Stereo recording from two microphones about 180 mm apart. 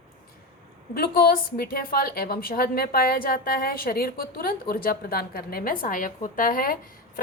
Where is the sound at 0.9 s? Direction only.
60° left (ahead or behind).